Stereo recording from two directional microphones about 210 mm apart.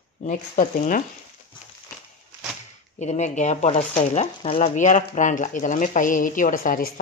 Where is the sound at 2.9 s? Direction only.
35° left (ahead or behind).